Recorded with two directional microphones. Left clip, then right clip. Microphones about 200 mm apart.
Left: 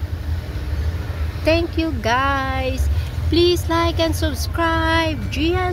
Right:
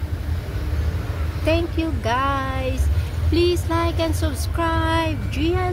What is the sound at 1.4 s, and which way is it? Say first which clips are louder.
Child singing: left 3 dB; 5° right (ahead or behind).